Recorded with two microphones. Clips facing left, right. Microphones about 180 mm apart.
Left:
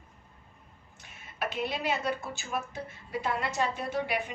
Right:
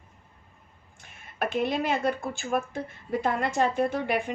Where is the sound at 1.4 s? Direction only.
45° right (ahead or behind).